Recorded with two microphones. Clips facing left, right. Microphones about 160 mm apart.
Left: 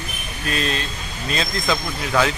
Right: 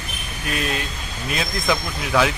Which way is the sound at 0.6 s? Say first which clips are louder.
Left 1 dB; 10° right (ahead or behind).